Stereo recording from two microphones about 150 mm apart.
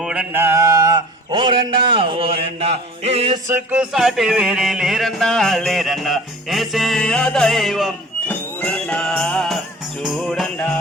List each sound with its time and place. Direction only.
0.0 s mantra: 5° right (ahead or behind); by 3.3 s 45° right (ahead or behind)
3.7 s music: 5° right (ahead or behind)
8.3 s music: 10° left (ahead or behind)